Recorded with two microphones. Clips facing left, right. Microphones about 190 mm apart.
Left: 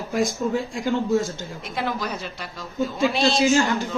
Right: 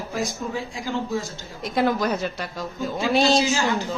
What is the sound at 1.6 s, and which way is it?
A woman's voice, 40° right (ahead or behind).